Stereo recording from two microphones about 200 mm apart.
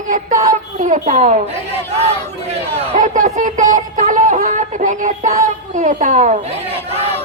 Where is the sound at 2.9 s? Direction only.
40° right (ahead or behind).